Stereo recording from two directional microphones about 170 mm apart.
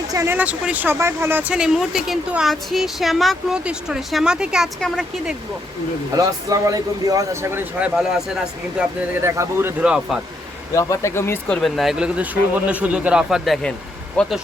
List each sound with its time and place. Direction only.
0.1 s speech: 15° right (ahead or behind); by 5.3 s centre (ahead or behind)
6.1 s speech: 20° right (ahead or behind)
7.8 s speech: 5° right (ahead or behind)
8.8 s speech: 15° right (ahead or behind)
10.7 s speech: 20° left (ahead or behind); by 14.4 s centre (ahead or behind)